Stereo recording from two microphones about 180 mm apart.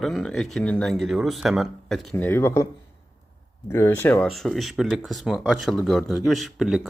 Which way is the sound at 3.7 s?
10° left (ahead or behind).